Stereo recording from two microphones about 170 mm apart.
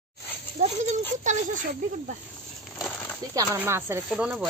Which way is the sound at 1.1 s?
45° right (ahead or behind).